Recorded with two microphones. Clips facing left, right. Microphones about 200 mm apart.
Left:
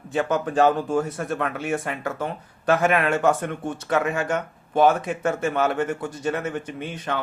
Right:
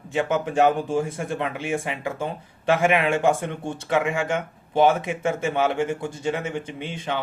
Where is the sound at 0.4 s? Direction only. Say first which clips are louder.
Left 1 dB; 15° right (ahead or behind).